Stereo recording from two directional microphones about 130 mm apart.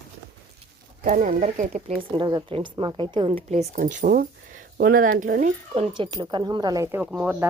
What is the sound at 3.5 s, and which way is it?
Speech, 75° right (ahead or behind).